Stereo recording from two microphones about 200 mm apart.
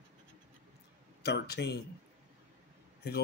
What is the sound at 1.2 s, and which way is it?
Speech, 55° left (ahead or behind).